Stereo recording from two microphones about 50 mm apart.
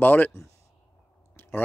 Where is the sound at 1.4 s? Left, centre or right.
Left.